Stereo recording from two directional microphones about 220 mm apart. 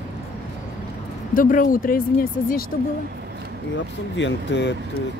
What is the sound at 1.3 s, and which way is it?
Speech, 35° left (ahead or behind).